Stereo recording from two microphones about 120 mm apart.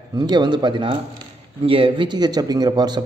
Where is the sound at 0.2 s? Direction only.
35° right (ahead or behind).